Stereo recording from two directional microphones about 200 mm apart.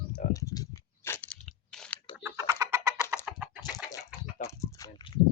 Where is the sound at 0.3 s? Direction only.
15° left (ahead or behind).